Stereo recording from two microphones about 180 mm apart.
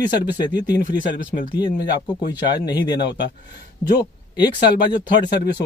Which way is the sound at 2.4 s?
25° left (ahead or behind).